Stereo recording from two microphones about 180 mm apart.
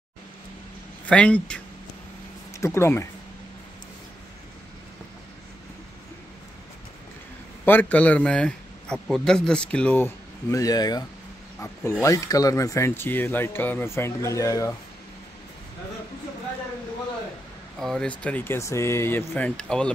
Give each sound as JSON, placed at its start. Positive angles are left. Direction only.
{"t": 1.0, "sound": "a man's voice", "side_deg": 5}
{"t": 2.6, "sound": "a man's voice", "side_deg": 15}
{"t": 7.6, "sound": "a man's voice", "side_deg": 10}
{"t": 17.7, "sound": "a man's voice", "side_deg": 0}